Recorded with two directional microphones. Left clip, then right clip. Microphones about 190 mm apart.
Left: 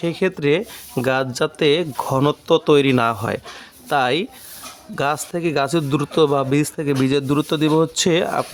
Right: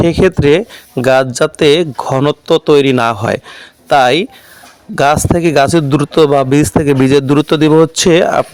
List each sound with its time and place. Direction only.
0.0 s speech: 35° right (ahead or behind)